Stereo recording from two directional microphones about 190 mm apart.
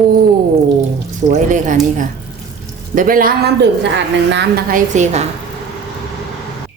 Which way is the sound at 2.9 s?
50° right (ahead or behind).